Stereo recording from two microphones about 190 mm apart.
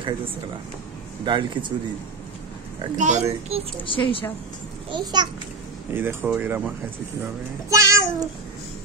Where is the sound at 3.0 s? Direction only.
35° right (ahead or behind).